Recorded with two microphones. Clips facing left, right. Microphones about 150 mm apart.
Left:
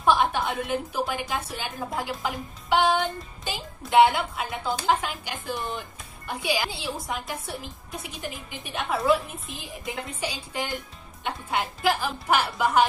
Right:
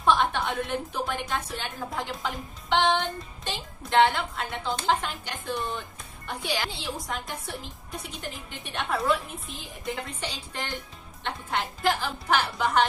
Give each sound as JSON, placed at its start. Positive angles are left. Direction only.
{"t": 0.0, "sound": "a woman's voice", "side_deg": 10}